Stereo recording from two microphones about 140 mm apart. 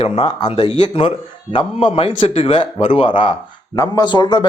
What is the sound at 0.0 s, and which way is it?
Speech, 40° left (ahead or behind).